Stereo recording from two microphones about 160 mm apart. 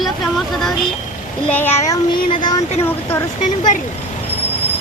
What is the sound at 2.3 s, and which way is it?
Speech, 25° left (ahead or behind).